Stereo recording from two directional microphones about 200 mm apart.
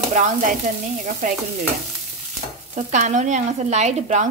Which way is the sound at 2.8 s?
35° right (ahead or behind).